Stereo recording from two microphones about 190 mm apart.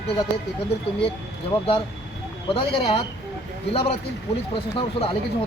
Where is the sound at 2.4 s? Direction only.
30° left (ahead or behind).